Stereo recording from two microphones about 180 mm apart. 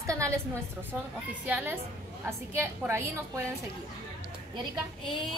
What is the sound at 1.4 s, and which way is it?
A woman's voice, 10° right (ahead or behind).